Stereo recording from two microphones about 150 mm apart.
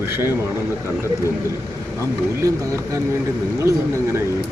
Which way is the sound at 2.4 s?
20° right (ahead or behind).